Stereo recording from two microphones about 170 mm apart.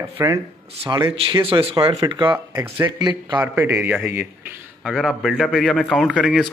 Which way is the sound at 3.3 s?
15° right (ahead or behind).